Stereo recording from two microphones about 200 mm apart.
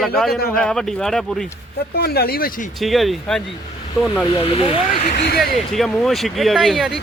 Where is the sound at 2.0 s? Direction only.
50° left (ahead or behind).